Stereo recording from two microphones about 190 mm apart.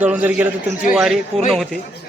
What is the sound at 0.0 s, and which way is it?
Speech, 10° right (ahead or behind).